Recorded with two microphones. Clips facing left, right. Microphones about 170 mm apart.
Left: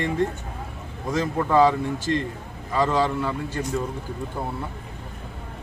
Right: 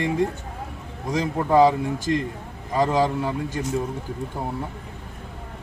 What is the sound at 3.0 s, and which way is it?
Speech, 15° right (ahead or behind).